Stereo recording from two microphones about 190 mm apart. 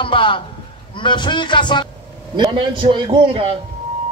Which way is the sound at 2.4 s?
25° right (ahead or behind).